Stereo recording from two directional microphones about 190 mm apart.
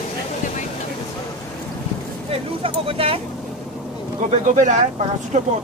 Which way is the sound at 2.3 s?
30° right (ahead or behind).